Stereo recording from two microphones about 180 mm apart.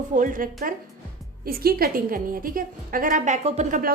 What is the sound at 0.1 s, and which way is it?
A woman's voice, 45° right (ahead or behind).